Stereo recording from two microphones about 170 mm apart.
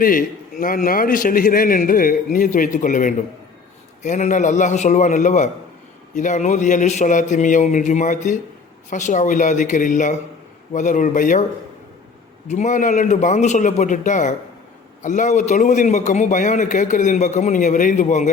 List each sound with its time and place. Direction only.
0.0 s a man's voice: 55° left (ahead or behind)
12.5 s a man's voice: 45° left (ahead or behind)